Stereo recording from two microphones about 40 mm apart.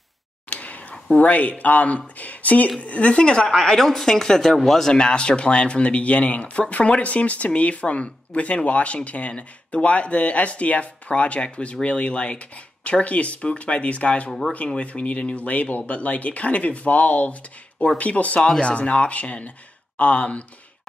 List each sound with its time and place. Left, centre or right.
0.5 s a sound: left
1.1 s speech: left
3.4 s speech: centre
4.8 s speech: left